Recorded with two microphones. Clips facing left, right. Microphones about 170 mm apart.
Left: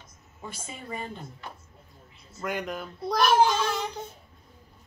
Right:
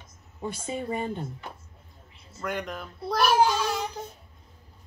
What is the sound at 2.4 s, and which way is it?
A child's voice, centre (ahead or behind).